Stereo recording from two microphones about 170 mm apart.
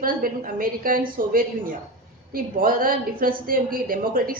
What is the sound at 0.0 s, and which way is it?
A woman's voice, 55° right (ahead or behind).